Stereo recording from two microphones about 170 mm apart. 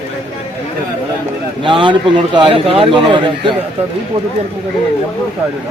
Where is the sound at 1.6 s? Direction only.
30° right (ahead or behind).